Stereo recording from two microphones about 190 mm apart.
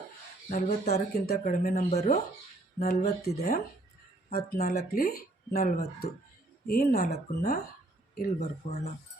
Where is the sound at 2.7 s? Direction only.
55° left (ahead or behind).